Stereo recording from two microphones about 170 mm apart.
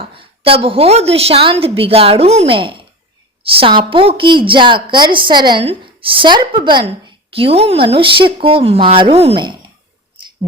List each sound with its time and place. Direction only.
0.0 s a woman's voice: 35° right (ahead or behind)